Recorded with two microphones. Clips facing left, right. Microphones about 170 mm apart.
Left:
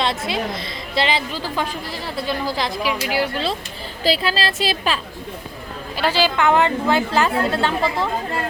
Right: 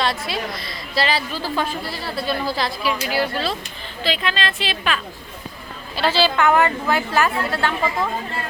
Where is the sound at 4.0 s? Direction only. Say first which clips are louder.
Left 3 dB; 35° left (ahead or behind).